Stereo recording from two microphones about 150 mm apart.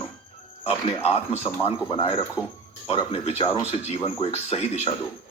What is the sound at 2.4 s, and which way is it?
Speech, 5° right (ahead or behind).